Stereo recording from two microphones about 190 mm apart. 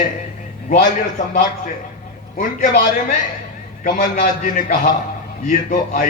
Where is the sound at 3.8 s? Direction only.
45° left (ahead or behind).